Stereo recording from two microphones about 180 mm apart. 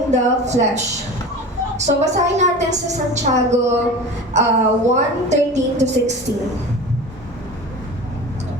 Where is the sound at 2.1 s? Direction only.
40° right (ahead or behind).